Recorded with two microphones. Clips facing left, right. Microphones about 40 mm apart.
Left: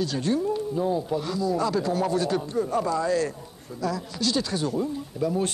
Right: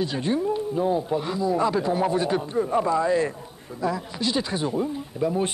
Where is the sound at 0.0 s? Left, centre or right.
Right.